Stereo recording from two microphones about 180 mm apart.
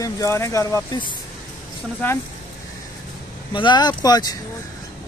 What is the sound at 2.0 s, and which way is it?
Speech, 10° left (ahead or behind).